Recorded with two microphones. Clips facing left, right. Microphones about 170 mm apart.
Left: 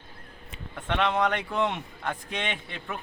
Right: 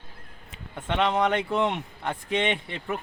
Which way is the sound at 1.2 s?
25° right (ahead or behind).